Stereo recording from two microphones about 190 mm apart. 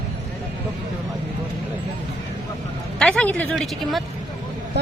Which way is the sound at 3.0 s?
5° left (ahead or behind).